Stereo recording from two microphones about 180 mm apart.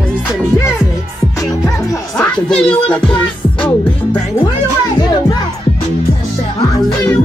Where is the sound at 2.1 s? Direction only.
5° left (ahead or behind).